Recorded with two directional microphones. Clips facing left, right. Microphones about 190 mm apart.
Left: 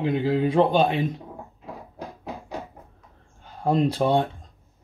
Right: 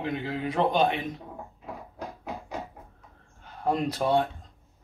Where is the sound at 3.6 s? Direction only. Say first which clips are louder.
Left 5 dB; 30° left (ahead or behind).